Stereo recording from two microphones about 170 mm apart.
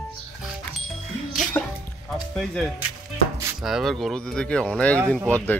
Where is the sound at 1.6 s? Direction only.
10° left (ahead or behind).